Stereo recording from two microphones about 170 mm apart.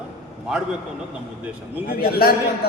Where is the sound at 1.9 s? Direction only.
60° left (ahead or behind).